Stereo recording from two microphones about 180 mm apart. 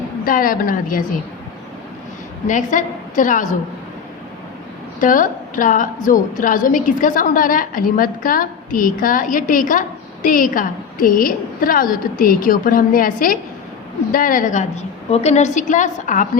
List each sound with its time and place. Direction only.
0.3 s a woman's voice: 50° left (ahead or behind)
2.5 s a woman's voice: 45° left (ahead or behind)
4.9 s a woman's voice: 50° left (ahead or behind)